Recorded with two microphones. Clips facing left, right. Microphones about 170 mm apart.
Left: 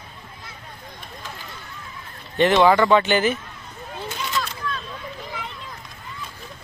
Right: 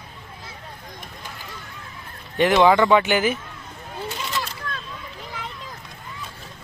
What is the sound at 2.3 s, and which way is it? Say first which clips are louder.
Speech: even; 10° right (ahead or behind).